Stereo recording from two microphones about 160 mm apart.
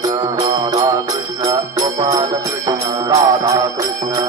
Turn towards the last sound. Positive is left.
turn(degrees=-25)  # may be behind; listen again after turning